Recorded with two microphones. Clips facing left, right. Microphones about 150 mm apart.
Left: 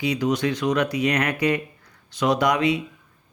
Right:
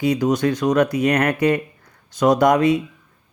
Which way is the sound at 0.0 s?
45° right (ahead or behind).